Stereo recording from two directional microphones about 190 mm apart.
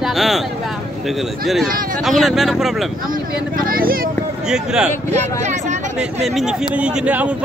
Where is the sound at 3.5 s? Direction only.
50° right (ahead or behind).